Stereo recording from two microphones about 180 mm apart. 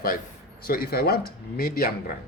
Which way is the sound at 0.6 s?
55° left (ahead or behind).